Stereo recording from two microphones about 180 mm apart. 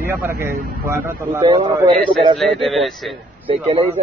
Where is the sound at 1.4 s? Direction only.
30° right (ahead or behind).